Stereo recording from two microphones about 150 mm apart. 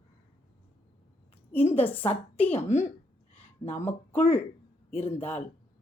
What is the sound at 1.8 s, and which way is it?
Speech, 10° left (ahead or behind).